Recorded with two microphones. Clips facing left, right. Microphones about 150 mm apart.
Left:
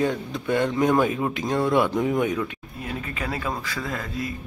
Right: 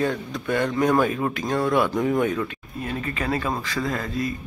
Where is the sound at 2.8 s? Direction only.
5° left (ahead or behind).